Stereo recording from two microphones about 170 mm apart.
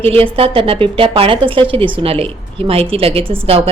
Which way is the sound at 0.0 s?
35° right (ahead or behind).